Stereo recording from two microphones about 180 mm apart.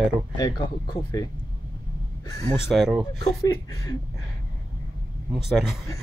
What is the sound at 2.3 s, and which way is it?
Speech, 15° left (ahead or behind).